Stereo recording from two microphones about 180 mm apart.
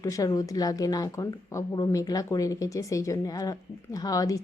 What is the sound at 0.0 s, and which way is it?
Speech, 20° left (ahead or behind).